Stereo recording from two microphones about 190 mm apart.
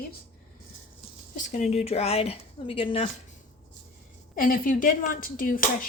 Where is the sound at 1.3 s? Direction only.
40° left (ahead or behind).